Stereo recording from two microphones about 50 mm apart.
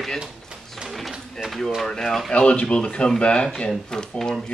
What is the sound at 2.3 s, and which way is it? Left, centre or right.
Speech, left.